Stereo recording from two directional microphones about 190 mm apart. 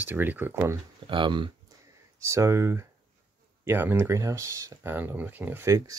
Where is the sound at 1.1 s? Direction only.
25° right (ahead or behind).